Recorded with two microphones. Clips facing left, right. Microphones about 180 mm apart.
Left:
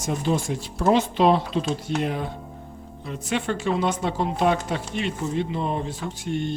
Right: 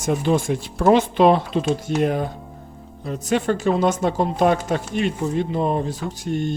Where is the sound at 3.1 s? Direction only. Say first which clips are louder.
Right 6 dB; 45° right (ahead or behind).